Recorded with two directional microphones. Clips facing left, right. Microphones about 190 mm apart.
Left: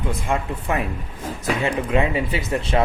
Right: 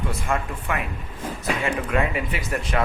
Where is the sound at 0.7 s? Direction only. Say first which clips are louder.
Left 4 dB; 30° left (ahead or behind).